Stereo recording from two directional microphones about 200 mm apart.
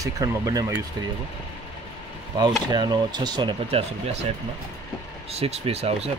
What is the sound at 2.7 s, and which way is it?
Speech, 20° right (ahead or behind).